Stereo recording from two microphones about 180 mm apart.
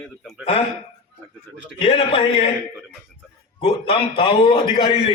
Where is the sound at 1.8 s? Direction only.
30° left (ahead or behind).